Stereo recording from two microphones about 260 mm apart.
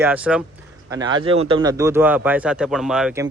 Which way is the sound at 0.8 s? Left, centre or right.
Centre.